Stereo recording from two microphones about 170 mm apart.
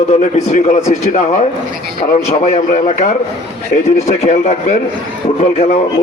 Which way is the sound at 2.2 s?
40° left (ahead or behind).